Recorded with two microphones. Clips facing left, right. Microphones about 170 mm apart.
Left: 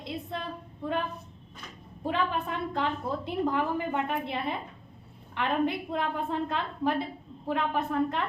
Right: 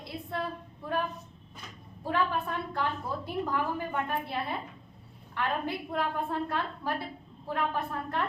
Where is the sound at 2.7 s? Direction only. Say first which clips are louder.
Left 3 dB; 20° left (ahead or behind).